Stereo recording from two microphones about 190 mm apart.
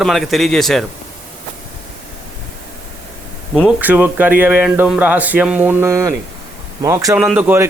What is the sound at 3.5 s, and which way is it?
Speech, 5° right (ahead or behind).